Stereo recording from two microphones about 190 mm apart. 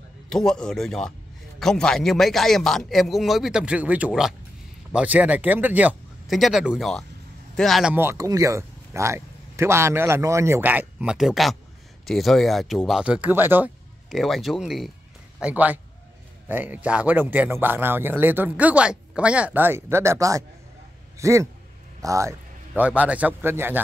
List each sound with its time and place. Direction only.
0.3 s a man's voice: 5° left (ahead or behind)
7.9 s a man's voice: 15° right (ahead or behind)
14.1 s a man's voice: centre (ahead or behind)